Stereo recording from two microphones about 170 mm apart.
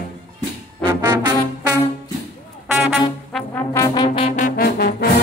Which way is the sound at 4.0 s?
35° left (ahead or behind).